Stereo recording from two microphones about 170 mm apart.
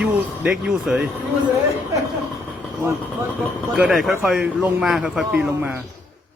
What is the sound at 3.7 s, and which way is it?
A man's voice, 5° right (ahead or behind).